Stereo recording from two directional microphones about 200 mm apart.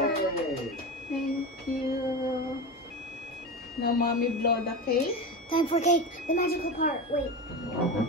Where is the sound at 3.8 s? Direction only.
50° left (ahead or behind).